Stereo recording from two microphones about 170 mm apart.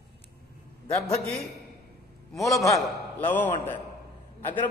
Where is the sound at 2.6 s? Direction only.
15° left (ahead or behind).